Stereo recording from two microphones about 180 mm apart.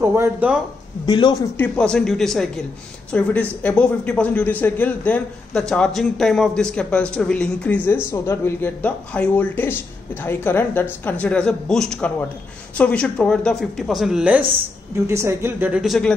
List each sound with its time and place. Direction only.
0.0 s a woman's voice: 15° right (ahead or behind)
1.0 s speech: 25° left (ahead or behind)
1.6 s a man's voice: 5° left (ahead or behind)